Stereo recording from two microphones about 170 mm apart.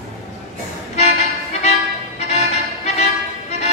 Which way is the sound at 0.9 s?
40° left (ahead or behind).